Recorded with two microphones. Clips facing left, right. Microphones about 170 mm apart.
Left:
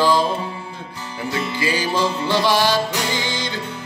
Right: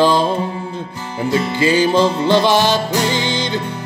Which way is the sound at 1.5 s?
25° right (ahead or behind).